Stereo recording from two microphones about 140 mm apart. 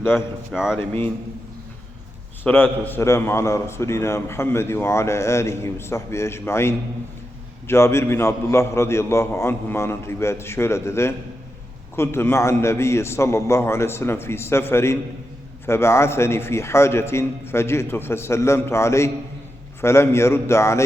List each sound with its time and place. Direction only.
0.0 s a man's voice: 15° left (ahead or behind)
0.5 s speech: 5° right (ahead or behind)
0.8 s a man's voice: 15° left (ahead or behind)
2.4 s a man's voice: 10° left (ahead or behind)